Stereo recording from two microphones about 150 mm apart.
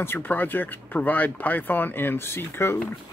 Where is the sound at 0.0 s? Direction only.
15° left (ahead or behind).